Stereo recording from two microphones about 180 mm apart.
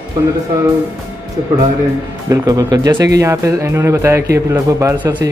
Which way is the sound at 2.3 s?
20° right (ahead or behind).